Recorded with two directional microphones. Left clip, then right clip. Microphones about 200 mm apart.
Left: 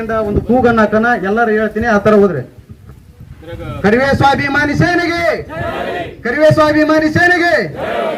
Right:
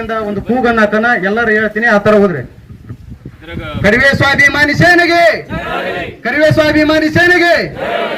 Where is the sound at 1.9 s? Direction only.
35° right (ahead or behind).